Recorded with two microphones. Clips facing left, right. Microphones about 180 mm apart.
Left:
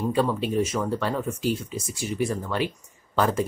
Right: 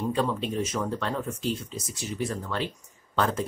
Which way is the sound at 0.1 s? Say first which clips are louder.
Left 4 dB; 5° left (ahead or behind).